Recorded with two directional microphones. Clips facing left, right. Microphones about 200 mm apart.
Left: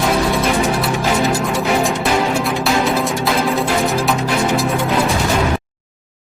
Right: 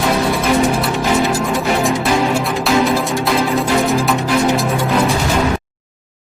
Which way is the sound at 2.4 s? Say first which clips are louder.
Right 2 dB; centre (ahead or behind).